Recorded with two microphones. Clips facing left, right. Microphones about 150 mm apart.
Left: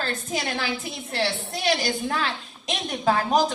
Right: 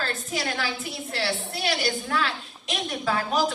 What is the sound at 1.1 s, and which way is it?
A woman's voice, 40° left (ahead or behind).